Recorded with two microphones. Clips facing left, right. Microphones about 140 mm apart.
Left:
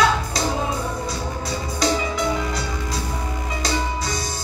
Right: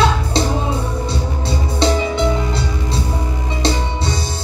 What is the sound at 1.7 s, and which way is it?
Music, 30° right (ahead or behind).